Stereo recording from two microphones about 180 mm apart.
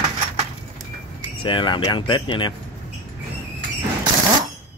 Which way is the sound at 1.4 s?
25° left (ahead or behind).